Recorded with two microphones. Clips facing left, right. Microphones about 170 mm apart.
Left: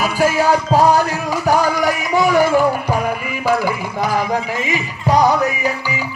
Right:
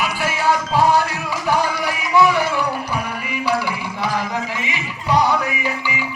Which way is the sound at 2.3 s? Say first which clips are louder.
Left 7 dB; 45° left (ahead or behind).